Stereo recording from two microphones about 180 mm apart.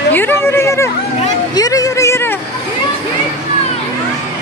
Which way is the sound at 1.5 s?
20° left (ahead or behind).